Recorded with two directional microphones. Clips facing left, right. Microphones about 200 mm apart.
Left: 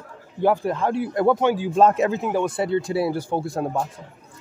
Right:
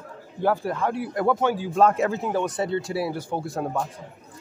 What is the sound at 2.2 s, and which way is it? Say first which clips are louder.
Speech: left 2 dB; 10° left (ahead or behind).